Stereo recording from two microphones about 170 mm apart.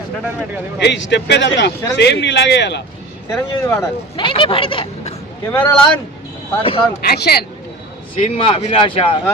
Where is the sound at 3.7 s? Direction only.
15° left (ahead or behind).